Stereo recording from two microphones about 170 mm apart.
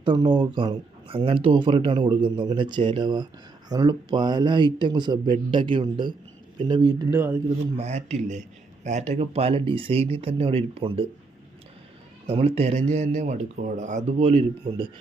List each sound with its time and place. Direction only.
0.0 s speech: 25° right (ahead or behind)
7.8 s speech: 40° right (ahead or behind)
12.3 s speech: 35° right (ahead or behind)